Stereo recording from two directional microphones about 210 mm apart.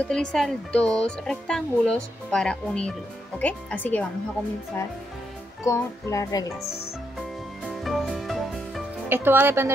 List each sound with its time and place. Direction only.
0.1 s a child's voice: 5° left (ahead or behind)
7.2 s music: centre (ahead or behind)
9.1 s speech: 10° right (ahead or behind)